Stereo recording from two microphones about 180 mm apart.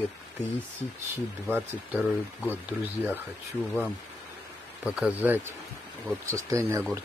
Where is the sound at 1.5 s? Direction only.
10° right (ahead or behind).